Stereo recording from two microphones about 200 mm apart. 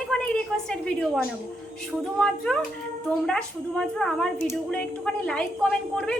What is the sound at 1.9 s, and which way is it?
A woman's voice, 5° left (ahead or behind).